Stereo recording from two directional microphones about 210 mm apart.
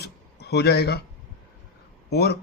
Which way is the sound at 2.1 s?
50° left (ahead or behind).